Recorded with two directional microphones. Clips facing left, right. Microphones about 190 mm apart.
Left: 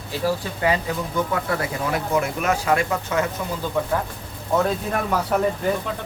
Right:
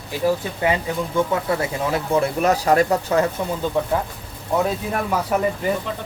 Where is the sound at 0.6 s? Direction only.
25° right (ahead or behind).